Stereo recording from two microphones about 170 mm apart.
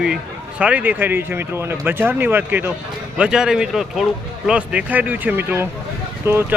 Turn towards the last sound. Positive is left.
turn(degrees=-15)  # may be behind; listen again after turning